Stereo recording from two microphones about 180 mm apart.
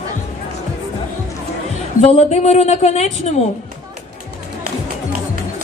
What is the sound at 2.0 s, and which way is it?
A woman's voice, 35° left (ahead or behind).